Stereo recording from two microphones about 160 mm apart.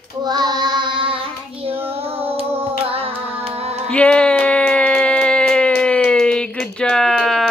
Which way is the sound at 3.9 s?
5° left (ahead or behind).